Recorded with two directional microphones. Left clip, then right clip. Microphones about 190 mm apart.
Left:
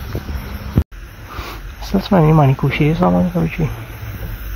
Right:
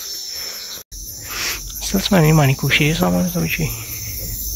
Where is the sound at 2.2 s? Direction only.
10° right (ahead or behind).